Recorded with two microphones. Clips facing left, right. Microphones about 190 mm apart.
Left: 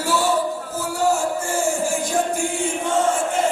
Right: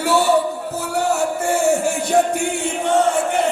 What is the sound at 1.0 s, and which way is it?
Music, 65° right (ahead or behind).